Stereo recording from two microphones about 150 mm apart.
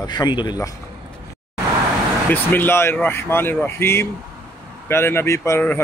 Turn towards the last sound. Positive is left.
turn(degrees=15)  # may be behind; listen again after turning